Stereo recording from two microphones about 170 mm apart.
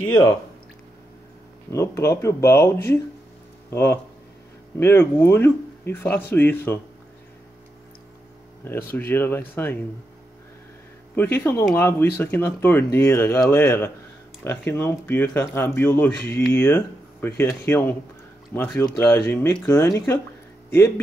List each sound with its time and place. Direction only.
0.0 s speech: 20° left (ahead or behind)
1.7 s speech: 15° left (ahead or behind)
8.6 s speech: 15° left (ahead or behind)
11.1 s speech: 15° left (ahead or behind)